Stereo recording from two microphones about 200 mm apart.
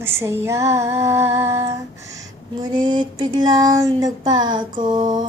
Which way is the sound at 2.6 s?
20° right (ahead or behind).